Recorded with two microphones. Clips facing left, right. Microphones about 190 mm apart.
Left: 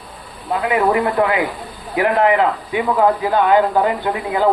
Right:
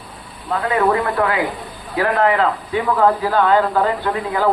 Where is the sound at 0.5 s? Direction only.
15° left (ahead or behind).